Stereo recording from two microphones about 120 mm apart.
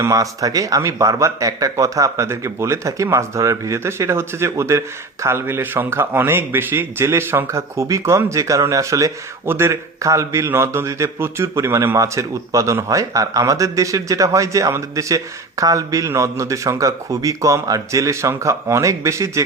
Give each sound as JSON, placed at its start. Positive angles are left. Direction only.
{"t": 0.0, "sound": "speech", "side_deg": -30}